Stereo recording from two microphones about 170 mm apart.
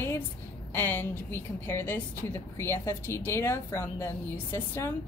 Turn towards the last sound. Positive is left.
turn(degrees=15)  # may be behind; listen again after turning